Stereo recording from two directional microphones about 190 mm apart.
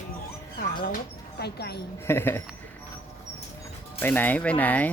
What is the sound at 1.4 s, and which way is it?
Speech, 60° left (ahead or behind).